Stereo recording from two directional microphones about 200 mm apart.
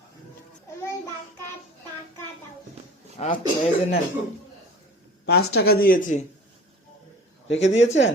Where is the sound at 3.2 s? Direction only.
30° left (ahead or behind).